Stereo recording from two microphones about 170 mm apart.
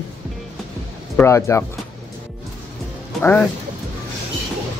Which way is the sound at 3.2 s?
10° left (ahead or behind).